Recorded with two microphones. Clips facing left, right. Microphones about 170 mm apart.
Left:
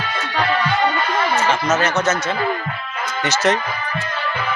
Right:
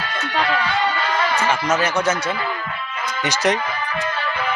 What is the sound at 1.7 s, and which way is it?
Speech, 10° right (ahead or behind).